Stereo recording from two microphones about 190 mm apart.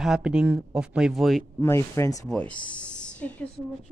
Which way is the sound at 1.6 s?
15° left (ahead or behind).